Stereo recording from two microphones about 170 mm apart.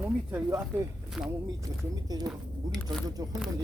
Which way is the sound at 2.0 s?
20° right (ahead or behind).